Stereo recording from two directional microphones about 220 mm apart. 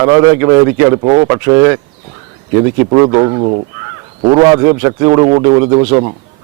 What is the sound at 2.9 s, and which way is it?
A man's voice, 20° right (ahead or behind).